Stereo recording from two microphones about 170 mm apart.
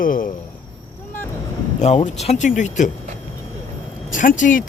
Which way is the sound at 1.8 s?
40° left (ahead or behind).